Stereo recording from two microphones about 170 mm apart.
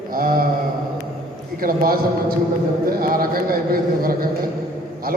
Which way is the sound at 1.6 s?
60° right (ahead or behind).